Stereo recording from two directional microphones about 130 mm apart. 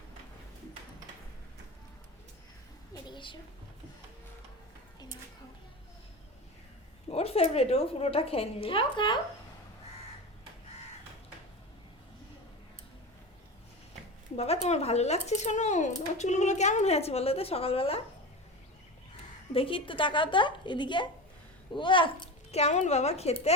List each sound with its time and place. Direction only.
2.9 s a sound: 40° left (ahead or behind)
7.1 s a woman's voice: 50° left (ahead or behind)
14.3 s speech: 55° left (ahead or behind)
19.5 s a woman's voice: 45° left (ahead or behind)
22.6 s speech: 60° left (ahead or behind)